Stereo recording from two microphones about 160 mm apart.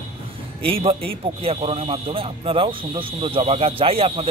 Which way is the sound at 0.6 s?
35° right (ahead or behind).